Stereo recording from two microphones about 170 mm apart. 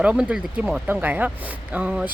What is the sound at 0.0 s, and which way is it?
Speech, 5° right (ahead or behind).